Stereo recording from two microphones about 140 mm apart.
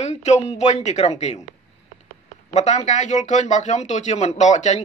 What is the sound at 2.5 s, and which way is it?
Speech, 55° left (ahead or behind).